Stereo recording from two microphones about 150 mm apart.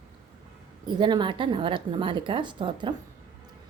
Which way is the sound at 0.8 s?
30° right (ahead or behind).